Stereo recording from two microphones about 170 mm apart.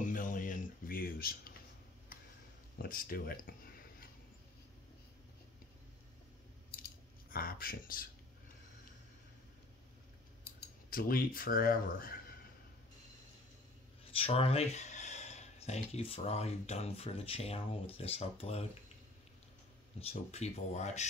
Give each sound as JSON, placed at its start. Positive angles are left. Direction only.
{"t": 0.0, "sound": "a sound", "side_deg": 50}
{"t": 2.8, "sound": "speech", "side_deg": 60}
{"t": 6.8, "sound": "typing", "side_deg": 60}
{"t": 10.9, "sound": "speech", "side_deg": 60}
{"t": 14.1, "sound": "speech", "side_deg": 35}
{"t": 20.0, "sound": "speech", "side_deg": 40}